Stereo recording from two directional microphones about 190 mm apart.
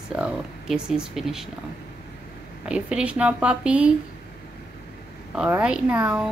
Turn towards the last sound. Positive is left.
turn(degrees=-5)  # may be behind; listen again after turning